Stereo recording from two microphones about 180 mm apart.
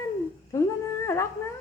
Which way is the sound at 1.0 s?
15° left (ahead or behind).